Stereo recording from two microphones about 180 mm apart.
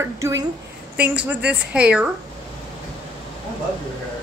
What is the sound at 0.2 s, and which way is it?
A woman's voice, 15° right (ahead or behind).